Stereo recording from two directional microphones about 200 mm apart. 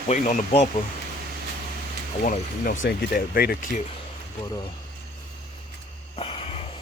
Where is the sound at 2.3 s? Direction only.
40° left (ahead or behind).